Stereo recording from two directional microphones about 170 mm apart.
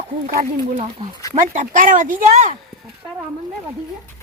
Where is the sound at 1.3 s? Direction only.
50° right (ahead or behind).